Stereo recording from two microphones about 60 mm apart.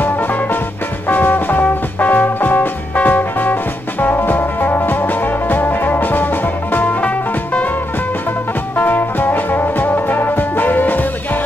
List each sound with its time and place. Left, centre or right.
1.0 s music: left
8.7 s music: left